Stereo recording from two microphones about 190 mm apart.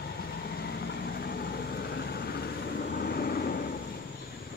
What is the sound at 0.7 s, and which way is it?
Vehicle, 60° left (ahead or behind).